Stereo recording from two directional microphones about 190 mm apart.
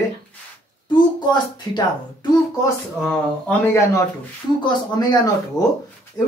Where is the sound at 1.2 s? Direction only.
25° left (ahead or behind).